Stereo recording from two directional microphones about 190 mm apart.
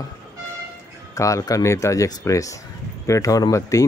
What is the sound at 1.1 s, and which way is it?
Speech, 15° left (ahead or behind).